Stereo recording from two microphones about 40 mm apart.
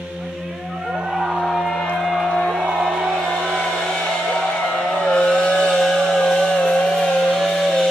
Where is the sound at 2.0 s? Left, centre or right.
Centre.